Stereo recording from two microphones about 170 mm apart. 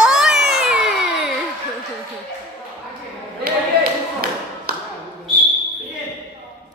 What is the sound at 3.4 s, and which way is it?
Clapping, 60° right (ahead or behind).